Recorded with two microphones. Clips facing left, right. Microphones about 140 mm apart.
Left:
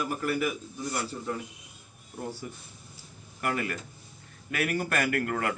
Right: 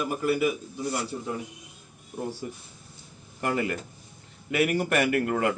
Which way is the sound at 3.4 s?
20° right (ahead or behind).